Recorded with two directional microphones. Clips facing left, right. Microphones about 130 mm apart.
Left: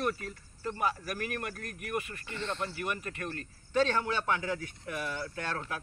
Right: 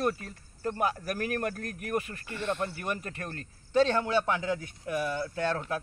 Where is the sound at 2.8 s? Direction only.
35° right (ahead or behind).